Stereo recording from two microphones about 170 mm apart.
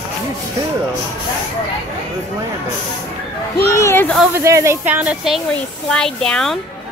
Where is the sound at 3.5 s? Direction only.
15° left (ahead or behind).